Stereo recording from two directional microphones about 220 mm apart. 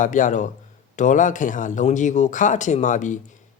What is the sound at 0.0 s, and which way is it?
Speech, 35° left (ahead or behind).